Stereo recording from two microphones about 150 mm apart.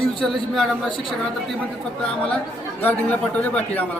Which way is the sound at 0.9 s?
35° left (ahead or behind).